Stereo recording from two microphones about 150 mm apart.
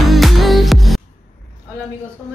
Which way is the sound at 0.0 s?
Centre (ahead or behind).